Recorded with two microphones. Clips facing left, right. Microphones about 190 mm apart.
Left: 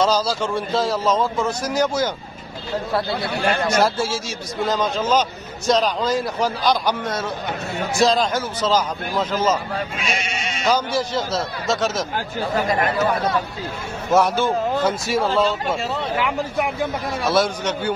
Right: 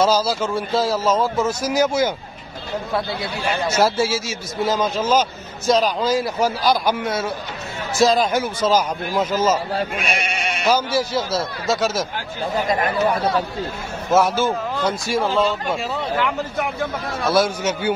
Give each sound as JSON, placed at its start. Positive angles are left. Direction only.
{"t": 0.0, "sound": "speech", "side_deg": -5}
{"t": 3.1, "sound": "a man's voice", "side_deg": 55}
{"t": 3.6, "sound": "a man's voice", "side_deg": -5}
{"t": 9.9, "sound": "speech", "side_deg": -60}
{"t": 10.7, "sound": "speech", "side_deg": -5}
{"t": 14.1, "sound": "speech", "side_deg": -5}